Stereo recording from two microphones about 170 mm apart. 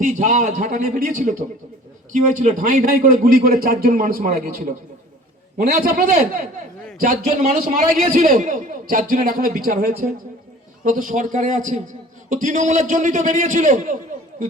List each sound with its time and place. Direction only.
0.0 s a man's voice: 45° right (ahead or behind)